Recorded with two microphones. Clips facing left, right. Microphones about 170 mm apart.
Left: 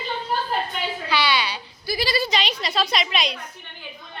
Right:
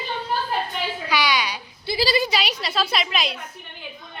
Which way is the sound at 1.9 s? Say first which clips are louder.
Right 3 dB; 30° right (ahead or behind).